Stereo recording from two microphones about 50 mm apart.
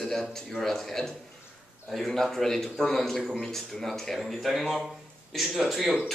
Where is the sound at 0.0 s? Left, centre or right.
Centre.